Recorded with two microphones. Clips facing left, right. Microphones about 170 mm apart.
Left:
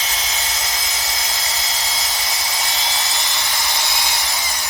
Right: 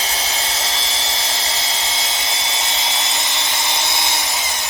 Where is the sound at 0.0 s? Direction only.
30° right (ahead or behind).